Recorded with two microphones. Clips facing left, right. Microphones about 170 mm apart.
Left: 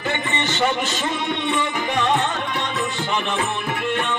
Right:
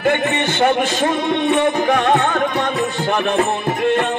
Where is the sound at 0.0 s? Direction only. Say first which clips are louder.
Right 7 dB; 55° right (ahead or behind).